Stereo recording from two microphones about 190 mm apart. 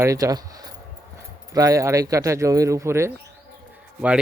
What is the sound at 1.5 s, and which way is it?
Speech, 15° right (ahead or behind).